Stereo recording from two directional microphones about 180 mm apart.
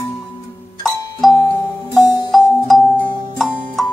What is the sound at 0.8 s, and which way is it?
Music, centre (ahead or behind).